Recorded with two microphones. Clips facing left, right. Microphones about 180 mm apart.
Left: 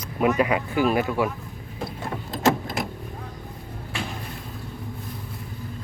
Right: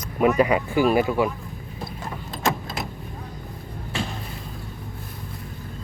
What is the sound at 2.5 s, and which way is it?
Vehicle, 55° left (ahead or behind).